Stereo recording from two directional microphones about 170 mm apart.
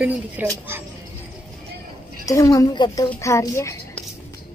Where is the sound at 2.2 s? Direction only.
20° left (ahead or behind).